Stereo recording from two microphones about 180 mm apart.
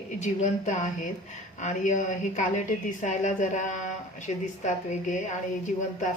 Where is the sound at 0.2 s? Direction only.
40° left (ahead or behind).